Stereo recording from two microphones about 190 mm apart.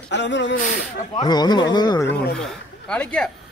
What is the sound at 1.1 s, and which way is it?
Speech, 20° left (ahead or behind).